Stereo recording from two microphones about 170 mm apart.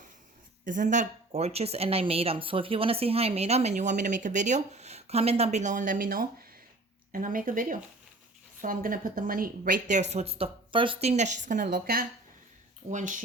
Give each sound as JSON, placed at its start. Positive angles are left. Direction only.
{"t": 0.6, "sound": "speech", "side_deg": -50}
{"t": 12.9, "sound": "speech", "side_deg": -50}